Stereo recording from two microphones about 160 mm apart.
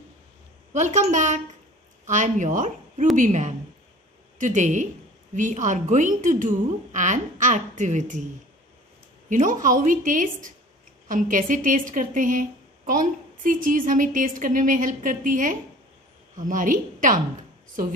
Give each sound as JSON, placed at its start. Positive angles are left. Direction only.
{"t": 0.7, "sound": "a woman's voice", "side_deg": -50}
{"t": 9.3, "sound": "a woman's voice", "side_deg": -55}